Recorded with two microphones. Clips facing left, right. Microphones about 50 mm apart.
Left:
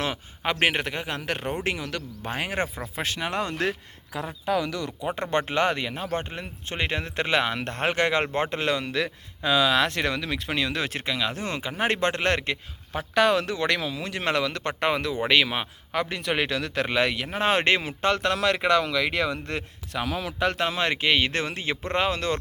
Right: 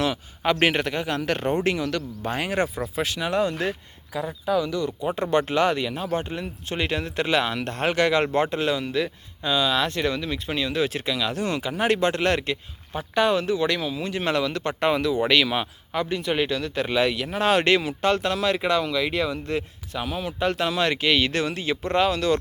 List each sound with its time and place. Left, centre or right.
0.4 s a man's voice: centre
2.9 s speech: left
3.6 s a man's voice: left
5.0 s speech: left
8.4 s speech: left
10.9 s speech: left
12.9 s speech: left
14.8 s speech: left
15.2 s speech: left
15.9 s a man's voice: left
17.2 s speech: left
18.2 s speech: left
20.5 s speech: left